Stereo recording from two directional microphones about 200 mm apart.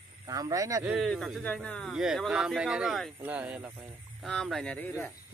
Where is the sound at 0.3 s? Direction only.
15° right (ahead or behind).